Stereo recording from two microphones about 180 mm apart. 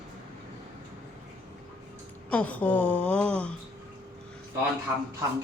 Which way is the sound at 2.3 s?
5° left (ahead or behind).